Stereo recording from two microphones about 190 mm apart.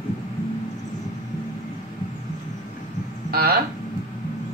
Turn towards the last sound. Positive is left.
turn(degrees=-55)  # may be behind; listen again after turning